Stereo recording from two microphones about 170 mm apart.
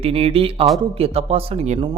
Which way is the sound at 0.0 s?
35° right (ahead or behind).